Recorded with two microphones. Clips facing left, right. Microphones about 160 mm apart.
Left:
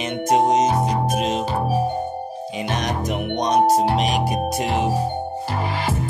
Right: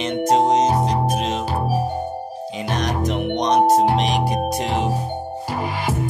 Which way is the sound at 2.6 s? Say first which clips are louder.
Right 2 dB; 15° left (ahead or behind).